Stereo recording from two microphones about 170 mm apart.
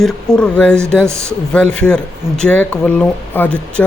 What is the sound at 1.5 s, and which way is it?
Speech, 5° left (ahead or behind).